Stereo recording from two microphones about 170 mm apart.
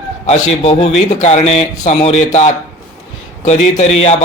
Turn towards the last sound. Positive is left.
turn(degrees=40)  # may be behind; listen again after turning